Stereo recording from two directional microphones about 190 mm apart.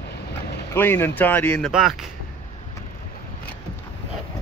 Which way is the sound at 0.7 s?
10° left (ahead or behind).